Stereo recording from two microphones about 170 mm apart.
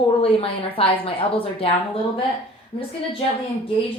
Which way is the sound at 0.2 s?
35° left (ahead or behind).